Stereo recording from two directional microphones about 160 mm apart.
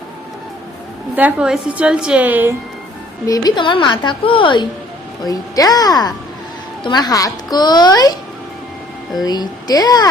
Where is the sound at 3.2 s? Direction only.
25° left (ahead or behind).